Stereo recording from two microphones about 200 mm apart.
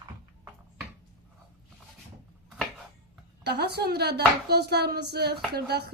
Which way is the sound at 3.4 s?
55° right (ahead or behind).